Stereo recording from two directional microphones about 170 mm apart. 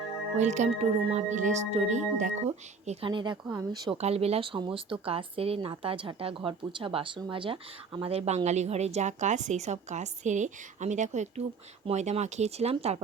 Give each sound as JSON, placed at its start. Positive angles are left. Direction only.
{"t": 0.3, "sound": "speech", "side_deg": -45}
{"t": 3.9, "sound": "speech", "side_deg": -35}